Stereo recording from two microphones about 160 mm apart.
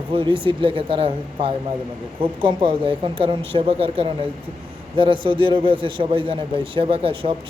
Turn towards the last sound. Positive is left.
turn(degrees=-35)  # may be behind; listen again after turning